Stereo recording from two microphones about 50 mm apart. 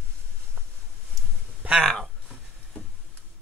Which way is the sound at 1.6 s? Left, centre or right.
Right.